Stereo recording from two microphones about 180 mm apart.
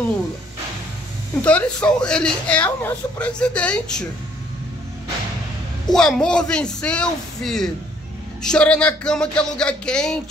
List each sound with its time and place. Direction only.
1.4 s speech: 5° left (ahead or behind)
5.9 s speech: 5° left (ahead or behind)